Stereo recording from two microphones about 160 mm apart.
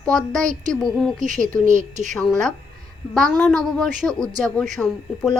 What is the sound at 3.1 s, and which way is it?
A woman's voice, centre (ahead or behind).